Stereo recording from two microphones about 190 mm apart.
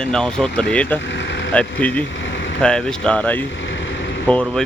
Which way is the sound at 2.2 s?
75° left (ahead or behind).